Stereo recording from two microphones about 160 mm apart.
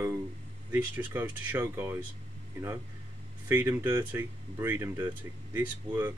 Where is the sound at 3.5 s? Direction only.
10° right (ahead or behind).